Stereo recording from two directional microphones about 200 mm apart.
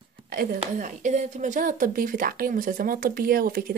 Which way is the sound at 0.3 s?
50° right (ahead or behind).